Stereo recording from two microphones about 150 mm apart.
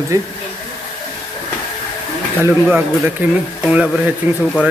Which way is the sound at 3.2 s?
10° right (ahead or behind).